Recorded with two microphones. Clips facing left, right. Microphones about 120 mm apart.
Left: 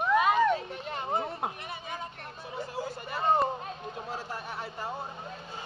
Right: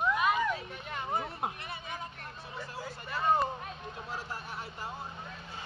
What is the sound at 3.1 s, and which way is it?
Music, 30° left (ahead or behind).